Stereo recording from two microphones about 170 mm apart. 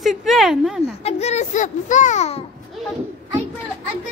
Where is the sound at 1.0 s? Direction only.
40° left (ahead or behind).